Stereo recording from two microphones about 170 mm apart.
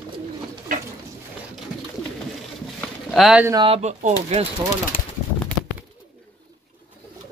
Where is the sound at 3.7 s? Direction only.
40° right (ahead or behind).